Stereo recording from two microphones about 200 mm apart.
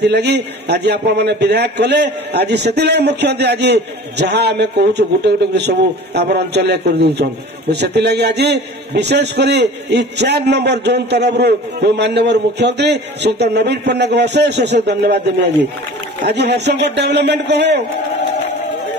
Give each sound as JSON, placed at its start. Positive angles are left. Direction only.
{"t": 0.1, "sound": "a man's voice", "side_deg": -55}
{"t": 16.3, "sound": "a man's voice", "side_deg": -55}